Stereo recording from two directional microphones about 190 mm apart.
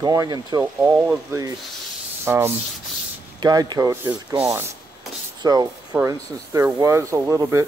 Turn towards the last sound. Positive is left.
turn(degrees=-15)  # may be behind; listen again after turning